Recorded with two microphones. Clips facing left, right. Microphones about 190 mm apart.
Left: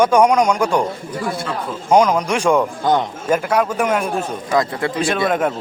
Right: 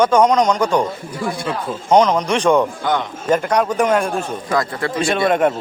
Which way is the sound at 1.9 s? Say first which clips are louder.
Even; 5° left (ahead or behind).